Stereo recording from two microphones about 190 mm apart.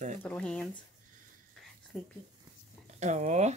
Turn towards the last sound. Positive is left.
turn(degrees=-40)  # may be behind; listen again after turning